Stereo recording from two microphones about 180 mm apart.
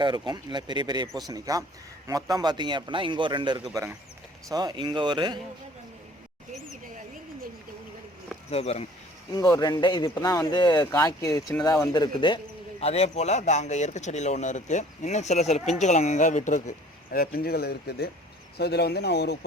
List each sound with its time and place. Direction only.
0.0 s speech: 25° right (ahead or behind)
8.4 s speech: 35° left (ahead or behind)
9.3 s speech: 20° left (ahead or behind)
12.8 s speech: 35° left (ahead or behind); by 19.5 s 65° left (ahead or behind)